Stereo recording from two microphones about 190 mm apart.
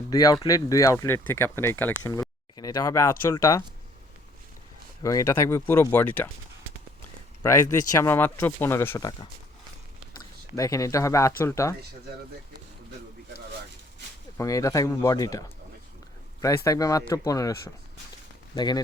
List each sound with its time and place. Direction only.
0.1 s speech: 20° left (ahead or behind)
5.0 s speech: 15° left (ahead or behind)
7.4 s speech: 15° left (ahead or behind)
10.2 s speech: 15° left (ahead or behind)
14.3 s speech: 15° left (ahead or behind)
16.6 s speech: 20° left (ahead or behind)
18.5 s speech: 20° left (ahead or behind)